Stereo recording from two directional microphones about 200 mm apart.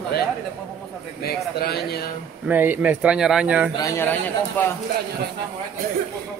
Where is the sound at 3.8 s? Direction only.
10° left (ahead or behind).